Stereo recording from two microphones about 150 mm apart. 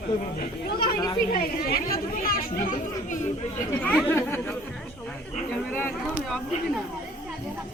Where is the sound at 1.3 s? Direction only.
85° left; by 3.2 s 70° left (ahead or behind).